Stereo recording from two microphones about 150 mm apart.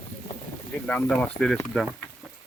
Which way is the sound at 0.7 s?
10° left (ahead or behind).